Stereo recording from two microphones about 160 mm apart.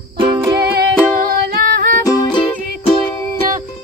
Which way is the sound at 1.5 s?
65° right (ahead or behind).